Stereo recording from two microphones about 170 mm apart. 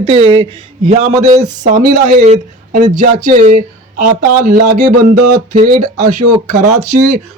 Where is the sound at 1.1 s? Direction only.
20° right (ahead or behind).